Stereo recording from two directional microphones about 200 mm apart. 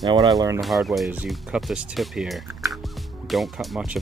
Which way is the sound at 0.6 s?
Centre (ahead or behind).